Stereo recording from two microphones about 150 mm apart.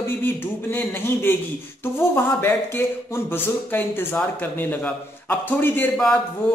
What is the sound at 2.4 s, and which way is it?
Speech, 15° left (ahead or behind).